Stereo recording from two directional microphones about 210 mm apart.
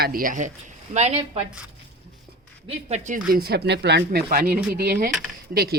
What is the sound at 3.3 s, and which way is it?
Speech, 50° right (ahead or behind).